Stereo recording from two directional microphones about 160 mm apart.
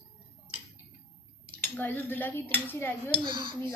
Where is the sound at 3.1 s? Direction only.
30° right (ahead or behind).